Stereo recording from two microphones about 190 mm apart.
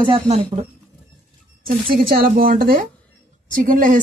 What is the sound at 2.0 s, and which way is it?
A woman's voice, 50° right (ahead or behind).